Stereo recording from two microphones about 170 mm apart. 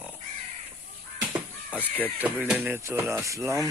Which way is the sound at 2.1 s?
10° right (ahead or behind).